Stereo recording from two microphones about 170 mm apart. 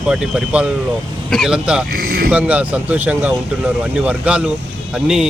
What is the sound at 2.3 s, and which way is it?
Speech, 10° right (ahead or behind).